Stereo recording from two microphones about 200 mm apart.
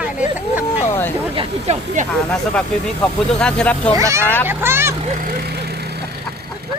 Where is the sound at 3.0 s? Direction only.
5° left (ahead or behind).